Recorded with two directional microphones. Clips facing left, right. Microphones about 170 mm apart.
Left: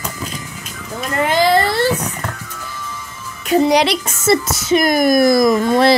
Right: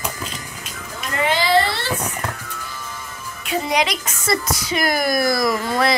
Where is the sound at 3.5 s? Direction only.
35° left (ahead or behind).